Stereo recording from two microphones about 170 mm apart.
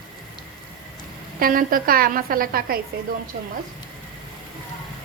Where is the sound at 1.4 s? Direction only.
55° right (ahead or behind).